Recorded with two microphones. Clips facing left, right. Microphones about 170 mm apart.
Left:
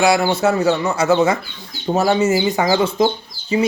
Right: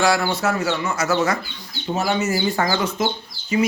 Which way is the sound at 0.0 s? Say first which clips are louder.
Left 4 dB; 20° left (ahead or behind).